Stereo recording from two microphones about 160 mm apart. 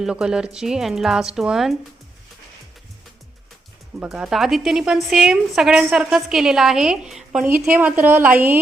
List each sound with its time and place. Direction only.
0.0 s a woman's voice: 5° right (ahead or behind)
4.0 s a woman's voice: 5° right (ahead or behind)